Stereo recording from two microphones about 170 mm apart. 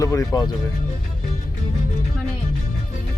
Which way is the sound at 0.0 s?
20° left (ahead or behind).